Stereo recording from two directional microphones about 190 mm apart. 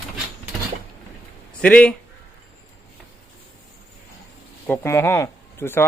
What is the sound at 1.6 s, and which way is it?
Speech, 5° left (ahead or behind).